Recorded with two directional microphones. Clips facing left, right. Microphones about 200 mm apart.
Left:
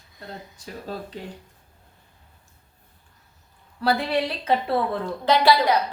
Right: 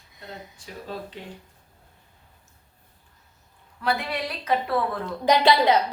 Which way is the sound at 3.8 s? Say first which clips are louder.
Left 5 dB; 30° left (ahead or behind).